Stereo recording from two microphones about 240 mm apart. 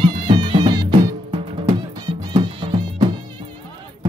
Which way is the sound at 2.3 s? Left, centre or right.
Centre.